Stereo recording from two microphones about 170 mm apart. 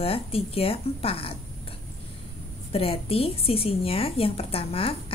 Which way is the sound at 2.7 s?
35° left (ahead or behind).